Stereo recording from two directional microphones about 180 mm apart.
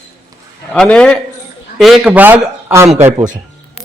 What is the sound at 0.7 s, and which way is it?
A man's voice, 5° left (ahead or behind).